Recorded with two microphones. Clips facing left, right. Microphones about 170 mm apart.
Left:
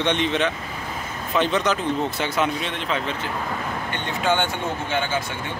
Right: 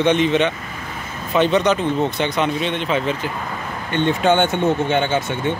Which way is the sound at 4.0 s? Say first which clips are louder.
Right 7 dB; 20° right (ahead or behind).